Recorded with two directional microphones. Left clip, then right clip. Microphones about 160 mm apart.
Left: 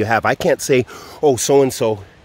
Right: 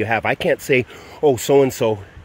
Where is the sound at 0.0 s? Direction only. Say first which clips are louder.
Left 3 dB; 35° left (ahead or behind).